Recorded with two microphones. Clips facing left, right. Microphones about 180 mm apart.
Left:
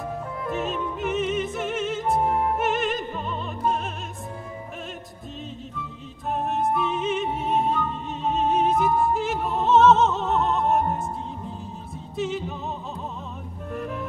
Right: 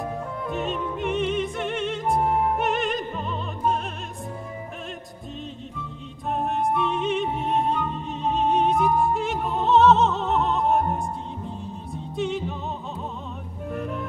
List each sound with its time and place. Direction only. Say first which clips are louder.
0.5 s music: left 1 dB; centre (ahead or behind)
6.3 s music: even; centre (ahead or behind)
13.7 s vehicle: right 1 dB; centre (ahead or behind)